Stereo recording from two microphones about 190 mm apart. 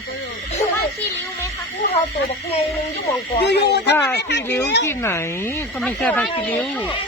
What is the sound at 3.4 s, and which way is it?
Speech, 60° left (ahead or behind).